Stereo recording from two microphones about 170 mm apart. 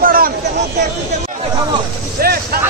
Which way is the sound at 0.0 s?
60° right (ahead or behind).